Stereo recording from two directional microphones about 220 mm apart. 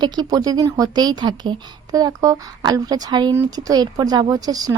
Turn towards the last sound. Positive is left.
turn(degrees=-15)  # may be behind; listen again after turning